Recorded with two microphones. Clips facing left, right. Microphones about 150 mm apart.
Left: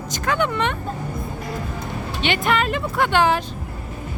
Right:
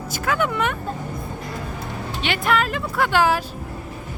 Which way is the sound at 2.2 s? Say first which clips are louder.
Left 1 dB; centre (ahead or behind).